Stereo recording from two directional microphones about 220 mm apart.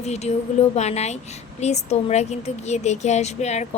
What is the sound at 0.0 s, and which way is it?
A woman's voice, 30° left (ahead or behind).